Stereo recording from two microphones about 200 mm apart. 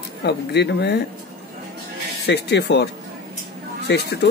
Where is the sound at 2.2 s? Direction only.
55° left (ahead or behind).